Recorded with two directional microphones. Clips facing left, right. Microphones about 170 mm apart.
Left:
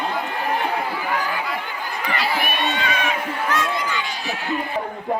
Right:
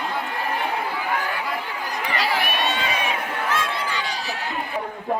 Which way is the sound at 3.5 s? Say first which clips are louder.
Left 3 dB; 30° right (ahead or behind).